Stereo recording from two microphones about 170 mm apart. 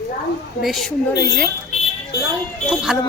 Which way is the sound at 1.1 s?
75° left (ahead or behind).